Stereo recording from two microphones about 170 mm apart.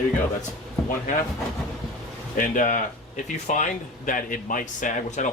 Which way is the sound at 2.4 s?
50° left (ahead or behind).